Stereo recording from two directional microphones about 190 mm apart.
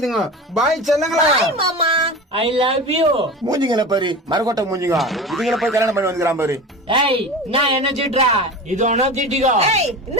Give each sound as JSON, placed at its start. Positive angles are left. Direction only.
{"t": 0.0, "sound": "speech", "side_deg": 0}
{"t": 1.5, "sound": "speech", "side_deg": -30}
{"t": 3.4, "sound": "speech", "side_deg": -20}
{"t": 4.9, "sound": "speech", "side_deg": 0}
{"t": 5.7, "sound": "a man's voice", "side_deg": -15}
{"t": 6.8, "sound": "speech", "side_deg": -30}